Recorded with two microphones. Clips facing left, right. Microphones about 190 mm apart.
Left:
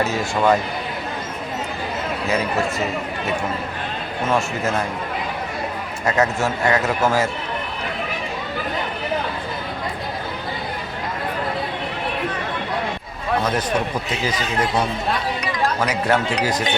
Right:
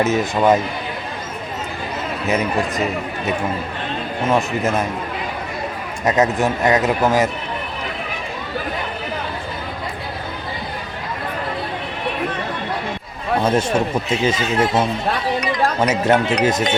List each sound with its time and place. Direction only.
0.0 s speech: 20° right (ahead or behind)
2.2 s speech: 20° right (ahead or behind)
4.3 s speech: 20° right (ahead or behind)
6.1 s speech: 20° right (ahead or behind)
13.4 s speech: 25° right (ahead or behind)